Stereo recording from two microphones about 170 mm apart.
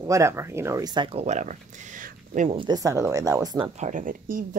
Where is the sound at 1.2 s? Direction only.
45° right (ahead or behind).